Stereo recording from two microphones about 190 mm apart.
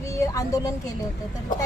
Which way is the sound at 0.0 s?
15° left (ahead or behind).